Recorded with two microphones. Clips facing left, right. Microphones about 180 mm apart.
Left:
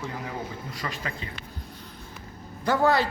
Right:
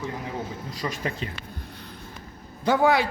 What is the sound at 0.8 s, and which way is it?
Speech, 20° right (ahead or behind).